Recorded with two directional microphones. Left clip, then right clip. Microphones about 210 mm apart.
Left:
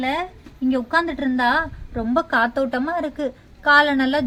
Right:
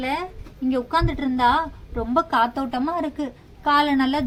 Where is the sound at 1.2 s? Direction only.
45° left (ahead or behind).